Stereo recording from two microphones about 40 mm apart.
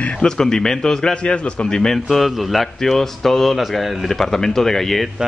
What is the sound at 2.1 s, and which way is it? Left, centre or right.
Speech, centre.